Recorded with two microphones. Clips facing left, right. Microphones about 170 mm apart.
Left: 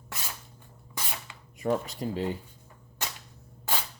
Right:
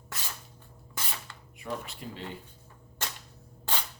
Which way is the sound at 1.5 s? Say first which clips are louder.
Left 9 dB; 40° left (ahead or behind).